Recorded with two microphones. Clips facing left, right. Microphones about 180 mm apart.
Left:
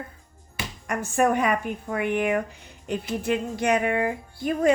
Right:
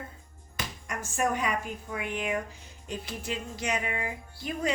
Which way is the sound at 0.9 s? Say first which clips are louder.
Left 8 dB; 60° left (ahead or behind).